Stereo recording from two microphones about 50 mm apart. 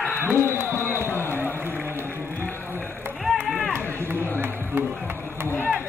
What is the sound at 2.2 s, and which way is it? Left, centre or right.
Run, left.